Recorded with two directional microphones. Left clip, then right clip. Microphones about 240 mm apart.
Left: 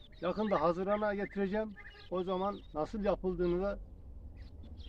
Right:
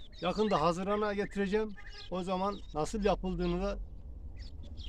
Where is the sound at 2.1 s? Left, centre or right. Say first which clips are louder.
Right 1 dB; right.